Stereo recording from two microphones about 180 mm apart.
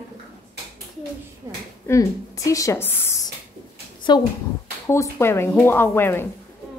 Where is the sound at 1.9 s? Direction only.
15° left (ahead or behind).